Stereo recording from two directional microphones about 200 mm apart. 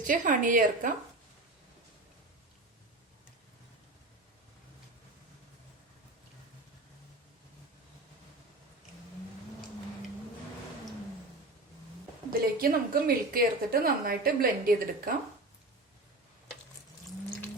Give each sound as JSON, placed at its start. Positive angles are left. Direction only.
{"t": 0.0, "sound": "a woman's voice", "side_deg": -40}
{"t": 12.3, "sound": "a woman's voice", "side_deg": -45}